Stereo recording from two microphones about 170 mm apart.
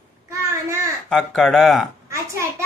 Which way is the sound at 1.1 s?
5° left (ahead or behind).